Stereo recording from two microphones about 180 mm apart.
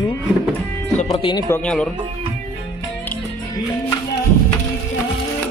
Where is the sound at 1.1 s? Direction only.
25° left (ahead or behind).